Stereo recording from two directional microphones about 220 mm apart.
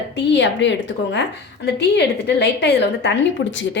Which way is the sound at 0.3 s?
55° left (ahead or behind).